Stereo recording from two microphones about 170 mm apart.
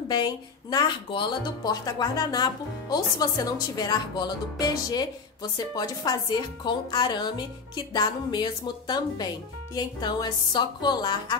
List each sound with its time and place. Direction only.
0.1 s speech: 25° left (ahead or behind)